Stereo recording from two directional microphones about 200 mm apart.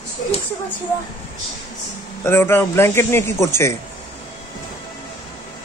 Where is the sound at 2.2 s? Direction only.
10° left (ahead or behind).